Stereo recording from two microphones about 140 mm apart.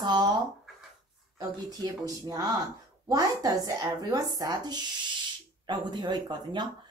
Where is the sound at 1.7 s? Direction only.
25° right (ahead or behind).